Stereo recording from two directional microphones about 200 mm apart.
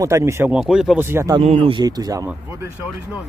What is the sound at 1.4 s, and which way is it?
Speech, 30° right (ahead or behind).